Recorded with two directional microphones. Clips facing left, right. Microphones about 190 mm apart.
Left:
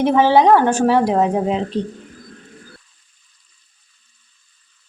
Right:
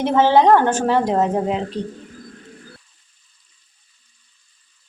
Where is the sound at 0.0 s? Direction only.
10° left (ahead or behind).